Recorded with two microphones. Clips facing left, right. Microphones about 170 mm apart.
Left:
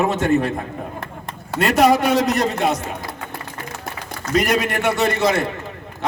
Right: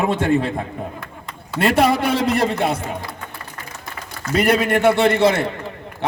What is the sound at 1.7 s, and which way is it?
A man's voice, 30° right (ahead or behind).